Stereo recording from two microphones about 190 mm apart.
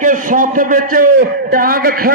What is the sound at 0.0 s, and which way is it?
A man's voice, 45° right (ahead or behind).